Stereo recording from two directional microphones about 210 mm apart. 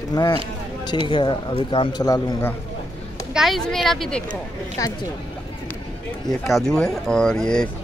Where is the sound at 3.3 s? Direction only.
Centre (ahead or behind).